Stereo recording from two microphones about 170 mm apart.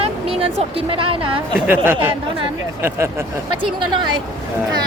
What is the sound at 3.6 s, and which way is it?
Speech, 30° right (ahead or behind).